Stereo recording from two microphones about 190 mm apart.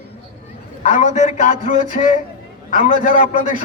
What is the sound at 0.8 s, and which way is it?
A man's voice, 40° left (ahead or behind).